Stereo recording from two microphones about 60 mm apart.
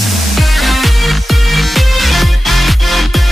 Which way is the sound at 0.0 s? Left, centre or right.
Centre.